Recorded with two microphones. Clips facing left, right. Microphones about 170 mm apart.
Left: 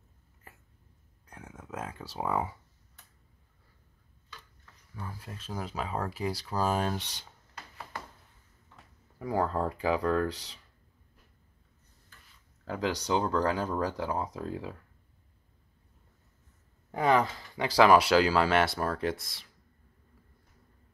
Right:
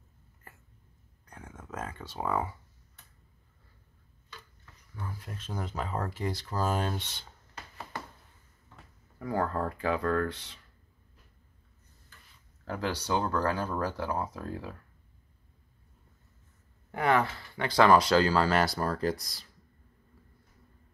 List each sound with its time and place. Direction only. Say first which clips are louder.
1.2 s a sound: even; 10° left (ahead or behind)
2.1 s speech: even; 15° left (ahead or behind)
4.9 s speech: right 1 dB; 5° left (ahead or behind)
9.2 s speech: left 1 dB; 15° left (ahead or behind)
12.6 s speech: left 2 dB; 10° left (ahead or behind)
16.9 s speech: left 1 dB; 15° left (ahead or behind)